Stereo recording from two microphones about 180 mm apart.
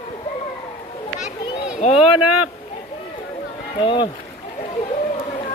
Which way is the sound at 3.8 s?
25° left (ahead or behind).